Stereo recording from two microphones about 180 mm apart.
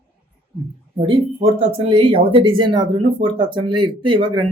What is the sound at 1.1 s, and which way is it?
Speech, 35° right (ahead or behind).